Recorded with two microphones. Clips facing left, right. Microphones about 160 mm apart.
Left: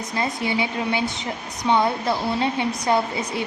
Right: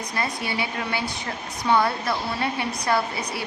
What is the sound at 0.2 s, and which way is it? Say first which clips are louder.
A woman's voice: left 4 dB; 20° left (ahead or behind).